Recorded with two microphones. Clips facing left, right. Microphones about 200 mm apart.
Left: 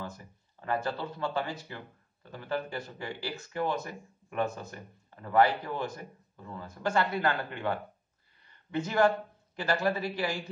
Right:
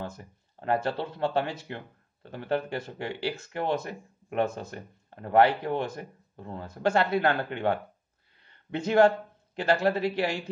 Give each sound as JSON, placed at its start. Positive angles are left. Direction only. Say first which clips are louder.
{"t": 0.2, "sound": "speech", "louder": "right 5 dB", "side_deg": -65}
{"t": 8.4, "sound": "a sound", "louder": "even", "side_deg": -65}
{"t": 9.6, "sound": "a man's voice", "louder": "right 5 dB", "side_deg": -65}